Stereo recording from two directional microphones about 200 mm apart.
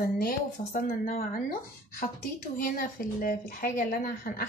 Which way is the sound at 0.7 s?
45° left (ahead or behind).